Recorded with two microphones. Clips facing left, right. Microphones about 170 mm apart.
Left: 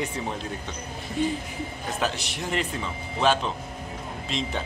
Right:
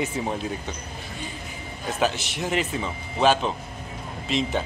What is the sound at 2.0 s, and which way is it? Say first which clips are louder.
A man's voice: right 5 dB; centre (ahead or behind).